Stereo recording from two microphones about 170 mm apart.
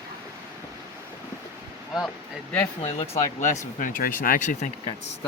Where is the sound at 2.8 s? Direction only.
35° left (ahead or behind).